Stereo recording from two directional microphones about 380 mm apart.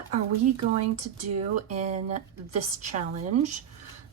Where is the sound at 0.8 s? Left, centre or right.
Right.